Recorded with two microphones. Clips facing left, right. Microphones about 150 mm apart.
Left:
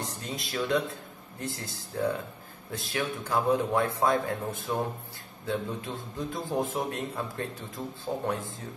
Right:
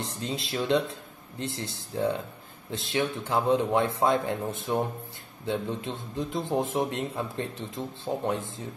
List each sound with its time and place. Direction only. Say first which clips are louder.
0.0 s a man's voice: right 3 dB; 25° right (ahead or behind)